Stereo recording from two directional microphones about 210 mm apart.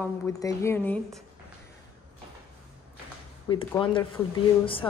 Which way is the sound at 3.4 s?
25° left (ahead or behind).